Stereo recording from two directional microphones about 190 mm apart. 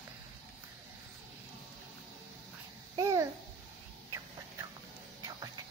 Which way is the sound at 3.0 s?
20° right (ahead or behind).